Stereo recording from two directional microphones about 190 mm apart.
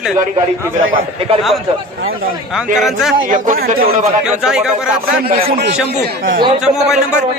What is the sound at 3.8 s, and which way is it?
Speech, 35° right (ahead or behind).